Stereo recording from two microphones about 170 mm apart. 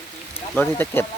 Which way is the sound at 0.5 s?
10° left (ahead or behind).